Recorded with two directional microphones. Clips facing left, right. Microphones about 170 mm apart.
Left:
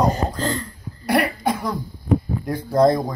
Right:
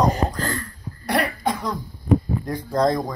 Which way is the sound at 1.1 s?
5° left (ahead or behind).